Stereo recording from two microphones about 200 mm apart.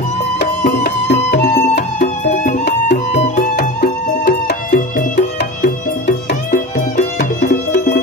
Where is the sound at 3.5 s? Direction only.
55° left (ahead or behind).